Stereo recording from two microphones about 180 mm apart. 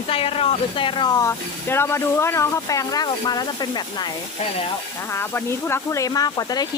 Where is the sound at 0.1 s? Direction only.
30° left (ahead or behind).